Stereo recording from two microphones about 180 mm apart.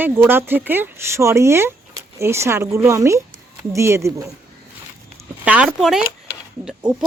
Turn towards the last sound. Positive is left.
turn(degrees=-5)  # may be behind; listen again after turning